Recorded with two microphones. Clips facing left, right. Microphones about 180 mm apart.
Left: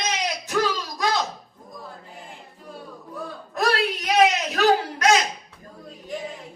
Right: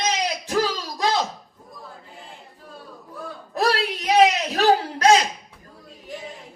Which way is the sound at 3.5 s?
30° right (ahead or behind).